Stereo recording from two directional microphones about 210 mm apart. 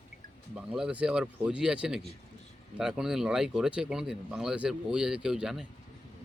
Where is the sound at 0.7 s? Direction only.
5° right (ahead or behind).